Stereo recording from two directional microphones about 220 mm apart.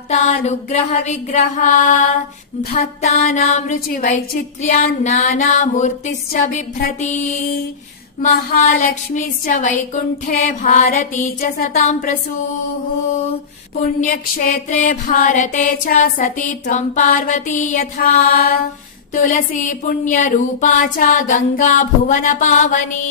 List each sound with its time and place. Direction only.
0.1 s music: 30° left (ahead or behind)
14.0 s music: 35° left (ahead or behind)